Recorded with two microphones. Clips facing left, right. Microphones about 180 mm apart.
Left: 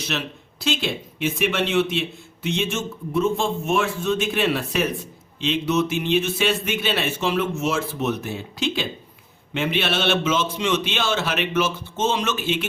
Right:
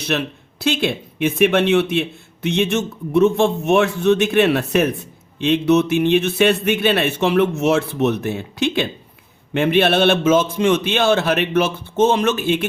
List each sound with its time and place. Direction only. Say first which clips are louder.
0.0 s a man's voice: right 6 dB; 55° right (ahead or behind)